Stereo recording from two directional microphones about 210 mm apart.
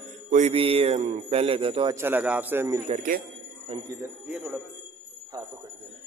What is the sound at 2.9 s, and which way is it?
Speech, 40° right (ahead or behind).